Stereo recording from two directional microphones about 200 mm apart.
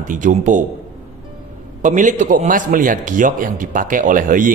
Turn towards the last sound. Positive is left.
turn(degrees=-40)  # may be behind; listen again after turning